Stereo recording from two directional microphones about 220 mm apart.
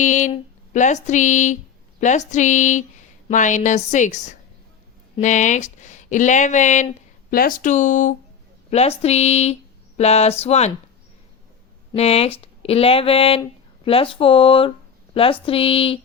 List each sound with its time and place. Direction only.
0.0 s a sound: 35° left (ahead or behind)
5.1 s speech: 35° left (ahead or behind)
11.9 s speech: 25° left (ahead or behind)